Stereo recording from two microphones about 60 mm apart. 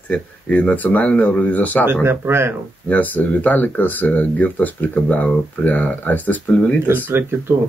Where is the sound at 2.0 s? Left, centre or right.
Right.